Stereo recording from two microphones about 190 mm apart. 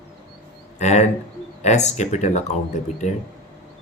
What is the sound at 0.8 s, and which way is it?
Speech, 40° left (ahead or behind).